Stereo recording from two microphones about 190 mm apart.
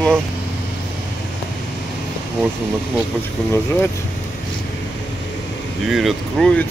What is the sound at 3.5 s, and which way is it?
Speech, 15° left (ahead or behind).